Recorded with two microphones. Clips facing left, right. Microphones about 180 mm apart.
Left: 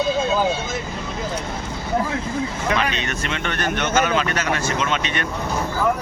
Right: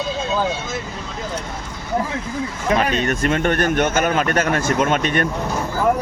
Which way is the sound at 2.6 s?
45° right (ahead or behind).